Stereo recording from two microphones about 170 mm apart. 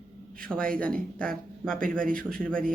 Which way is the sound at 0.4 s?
5° left (ahead or behind).